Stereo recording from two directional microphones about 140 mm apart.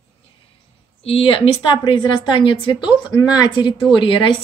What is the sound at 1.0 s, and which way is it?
A woman's voice, 40° left (ahead or behind).